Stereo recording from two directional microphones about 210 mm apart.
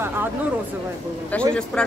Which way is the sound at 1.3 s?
5° left (ahead or behind).